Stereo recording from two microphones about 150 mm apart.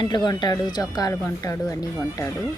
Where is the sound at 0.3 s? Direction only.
30° left (ahead or behind).